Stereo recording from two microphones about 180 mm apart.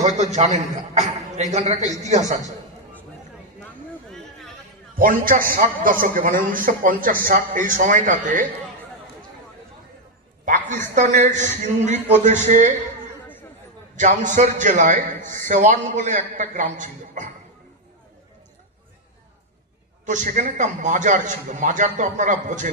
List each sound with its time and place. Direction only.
0.0 s a man's voice: 40° right (ahead or behind)
4.9 s a man's voice: 50° right (ahead or behind)
10.4 s a sound: 45° right (ahead or behind)
11.0 s a man's voice: 45° right (ahead or behind)
13.9 s a man's voice: 45° right (ahead or behind)
20.1 s a man's voice: 45° right (ahead or behind)